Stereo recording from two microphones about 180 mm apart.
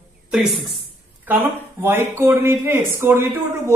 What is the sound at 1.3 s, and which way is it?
Speech, 10° right (ahead or behind).